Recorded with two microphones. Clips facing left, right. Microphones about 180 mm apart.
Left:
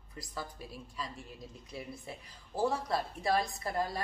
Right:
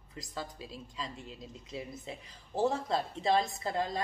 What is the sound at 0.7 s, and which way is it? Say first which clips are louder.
A woman's voice: right 1 dB; 20° right (ahead or behind).